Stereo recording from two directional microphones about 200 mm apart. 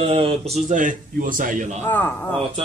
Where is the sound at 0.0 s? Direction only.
30° right (ahead or behind).